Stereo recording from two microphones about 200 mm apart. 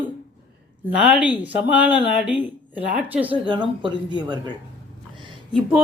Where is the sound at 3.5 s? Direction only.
25° right (ahead or behind).